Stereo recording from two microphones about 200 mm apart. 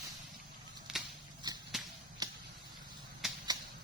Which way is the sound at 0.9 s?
5° right (ahead or behind).